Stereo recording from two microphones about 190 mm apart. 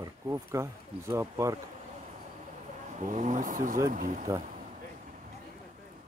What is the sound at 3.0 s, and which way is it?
Speech, 40° right (ahead or behind).